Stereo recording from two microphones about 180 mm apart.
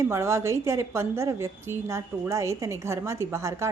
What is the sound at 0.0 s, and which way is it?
A woman's voice, 15° right (ahead or behind).